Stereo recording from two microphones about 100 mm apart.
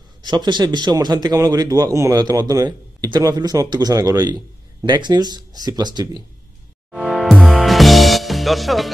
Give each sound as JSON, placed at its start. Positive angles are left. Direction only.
{"t": 0.2, "sound": "a man's voice", "side_deg": -45}
{"t": 4.8, "sound": "speech", "side_deg": -50}
{"t": 6.9, "sound": "music", "side_deg": 0}